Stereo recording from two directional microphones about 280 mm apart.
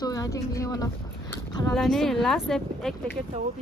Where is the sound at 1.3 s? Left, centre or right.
Centre.